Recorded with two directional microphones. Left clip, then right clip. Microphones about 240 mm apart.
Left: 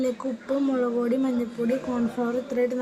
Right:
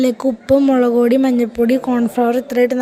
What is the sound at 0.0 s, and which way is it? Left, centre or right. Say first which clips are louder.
Speech: right 11 dB; right.